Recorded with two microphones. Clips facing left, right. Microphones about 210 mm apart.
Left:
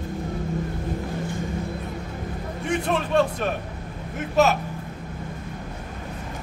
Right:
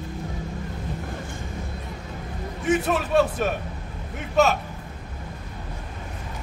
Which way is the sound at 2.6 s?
5° right (ahead or behind).